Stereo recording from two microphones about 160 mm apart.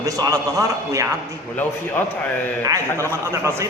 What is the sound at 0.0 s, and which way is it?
A man's voice, 20° right (ahead or behind).